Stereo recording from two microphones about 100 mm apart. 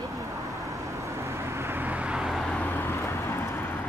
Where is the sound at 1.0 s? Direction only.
30° right (ahead or behind); by 2.4 s 5° right (ahead or behind).